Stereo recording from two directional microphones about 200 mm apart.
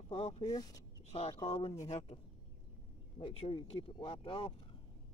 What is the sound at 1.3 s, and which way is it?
Speech, 25° left (ahead or behind).